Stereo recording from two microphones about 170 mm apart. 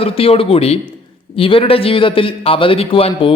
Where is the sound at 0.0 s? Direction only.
35° left (ahead or behind).